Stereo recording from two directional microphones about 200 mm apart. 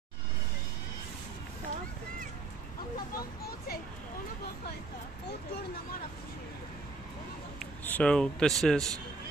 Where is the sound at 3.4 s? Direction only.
50° left (ahead or behind).